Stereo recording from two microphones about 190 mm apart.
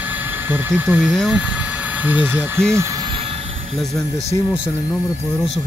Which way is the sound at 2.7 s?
20° right (ahead or behind).